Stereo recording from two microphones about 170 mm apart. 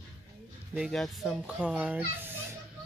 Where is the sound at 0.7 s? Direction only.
Centre (ahead or behind).